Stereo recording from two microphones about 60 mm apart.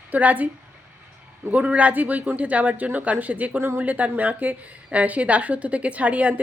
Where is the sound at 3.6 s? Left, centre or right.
Right.